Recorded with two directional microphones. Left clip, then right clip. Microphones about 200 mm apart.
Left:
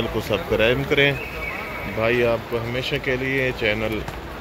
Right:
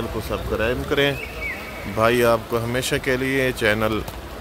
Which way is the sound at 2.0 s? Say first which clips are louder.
Right 3 dB; 20° right (ahead or behind).